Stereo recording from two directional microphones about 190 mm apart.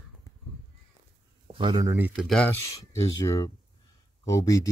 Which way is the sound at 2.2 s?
5° left (ahead or behind).